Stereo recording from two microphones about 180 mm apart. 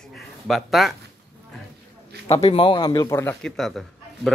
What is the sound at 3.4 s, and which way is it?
Speech, centre (ahead or behind).